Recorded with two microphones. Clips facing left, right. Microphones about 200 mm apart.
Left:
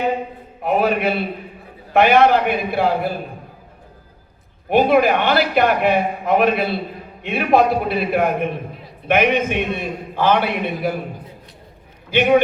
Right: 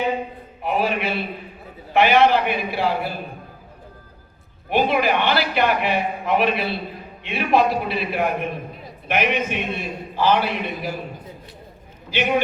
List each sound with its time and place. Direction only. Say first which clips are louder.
0.6 s a man's voice: left 5 dB; 50° left (ahead or behind)
4.7 s a man's voice: left 5 dB; 50° left (ahead or behind)
12.1 s a man's voice: left 7 dB; 55° left (ahead or behind)